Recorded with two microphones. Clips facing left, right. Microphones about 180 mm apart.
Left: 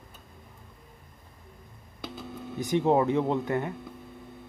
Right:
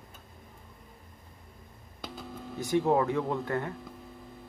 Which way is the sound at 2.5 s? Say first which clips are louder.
Left 2 dB; 20° left (ahead or behind).